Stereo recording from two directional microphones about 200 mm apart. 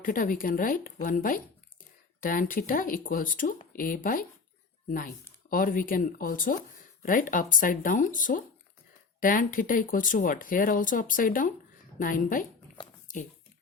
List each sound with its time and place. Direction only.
0.0 s speech: 45° left (ahead or behind)